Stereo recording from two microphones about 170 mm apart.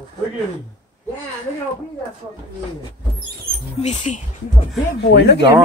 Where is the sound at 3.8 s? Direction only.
45° left (ahead or behind).